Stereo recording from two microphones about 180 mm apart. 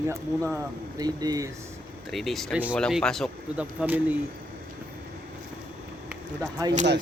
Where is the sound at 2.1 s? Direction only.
Centre (ahead or behind).